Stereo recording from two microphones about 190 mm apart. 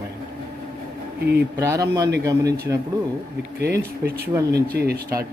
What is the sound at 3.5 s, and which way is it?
Speech, 60° right (ahead or behind).